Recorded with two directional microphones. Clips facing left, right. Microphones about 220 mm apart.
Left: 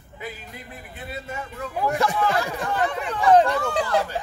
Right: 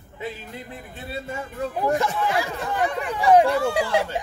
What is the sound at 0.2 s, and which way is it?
Speech, 25° right (ahead or behind).